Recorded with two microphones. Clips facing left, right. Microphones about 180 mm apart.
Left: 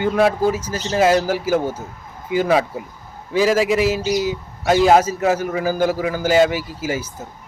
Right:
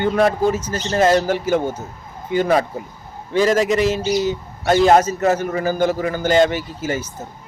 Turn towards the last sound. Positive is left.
turn(degrees=5)  # may be behind; listen again after turning